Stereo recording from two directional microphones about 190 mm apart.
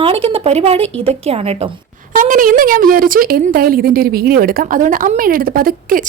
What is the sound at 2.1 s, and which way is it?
Speech, 45° right (ahead or behind).